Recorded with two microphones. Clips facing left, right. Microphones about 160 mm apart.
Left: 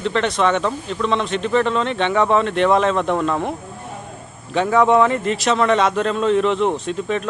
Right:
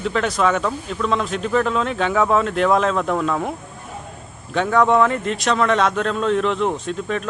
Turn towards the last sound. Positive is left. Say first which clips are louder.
# left 2 dB
turn(degrees=0)  # may be behind; listen again after turning